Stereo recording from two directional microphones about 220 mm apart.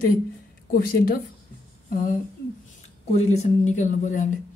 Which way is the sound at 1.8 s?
40° left (ahead or behind).